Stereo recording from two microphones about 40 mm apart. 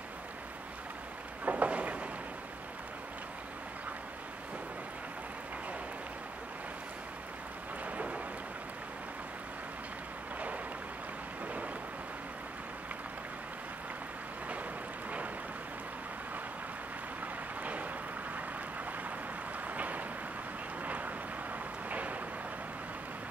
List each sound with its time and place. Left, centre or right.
1.4 s a sound: right
7.8 s thunder: right
11.4 s thunder: right
17.2 s vehicle: right
19.7 s vehicle: right
21.8 s a sound: right